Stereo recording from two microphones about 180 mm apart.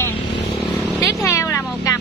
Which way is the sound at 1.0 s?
15° left (ahead or behind).